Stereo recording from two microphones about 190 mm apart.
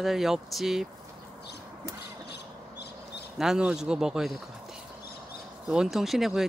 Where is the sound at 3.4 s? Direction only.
5° right (ahead or behind).